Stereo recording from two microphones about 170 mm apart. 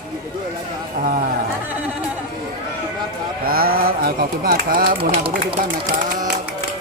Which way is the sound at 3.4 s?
60° right (ahead or behind).